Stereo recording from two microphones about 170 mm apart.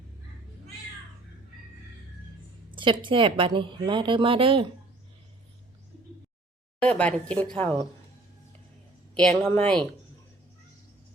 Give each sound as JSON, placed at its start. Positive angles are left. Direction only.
{"t": 2.7, "sound": "a woman's voice", "side_deg": -30}
{"t": 6.8, "sound": "speech", "side_deg": 5}
{"t": 9.1, "sound": "speech", "side_deg": 5}